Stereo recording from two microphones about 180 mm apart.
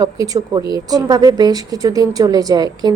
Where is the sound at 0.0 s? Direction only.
20° right (ahead or behind).